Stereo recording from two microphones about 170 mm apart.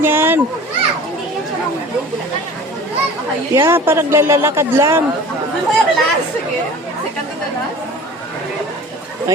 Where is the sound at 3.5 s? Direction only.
15° right (ahead or behind).